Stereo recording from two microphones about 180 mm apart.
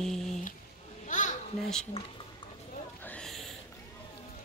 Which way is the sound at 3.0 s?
5° left (ahead or behind).